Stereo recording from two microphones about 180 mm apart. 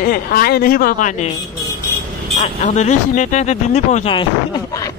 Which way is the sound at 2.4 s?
40° left (ahead or behind).